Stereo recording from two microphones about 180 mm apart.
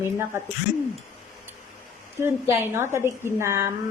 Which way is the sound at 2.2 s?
15° right (ahead or behind).